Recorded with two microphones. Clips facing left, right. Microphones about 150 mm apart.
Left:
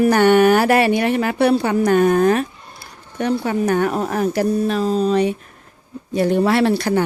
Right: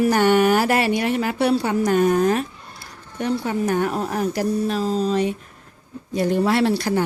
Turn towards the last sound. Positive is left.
turn(degrees=65)  # may be behind; listen again after turning